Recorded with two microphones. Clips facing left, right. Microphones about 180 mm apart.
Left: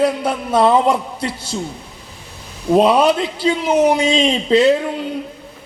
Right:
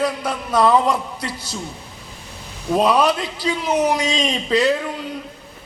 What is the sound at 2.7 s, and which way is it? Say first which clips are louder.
A man's voice: left 4 dB; 30° left (ahead or behind).